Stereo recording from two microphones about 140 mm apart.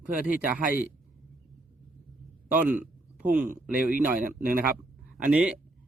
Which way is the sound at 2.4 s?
10° right (ahead or behind).